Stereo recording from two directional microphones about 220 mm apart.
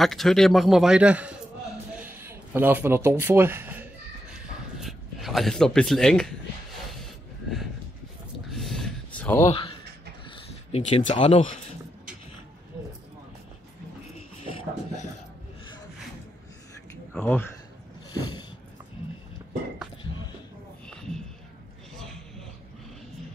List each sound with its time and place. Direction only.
0.0 s a man's voice: centre (ahead or behind)
2.0 s a sound: 10° right (ahead or behind)
4.7 s speech: centre (ahead or behind)
8.5 s a sound: centre (ahead or behind)
9.5 s speech: 25° left (ahead or behind)
17.1 s speech: 10° left (ahead or behind)